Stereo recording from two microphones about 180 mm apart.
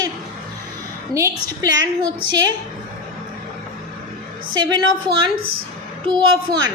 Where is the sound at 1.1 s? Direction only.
15° right (ahead or behind).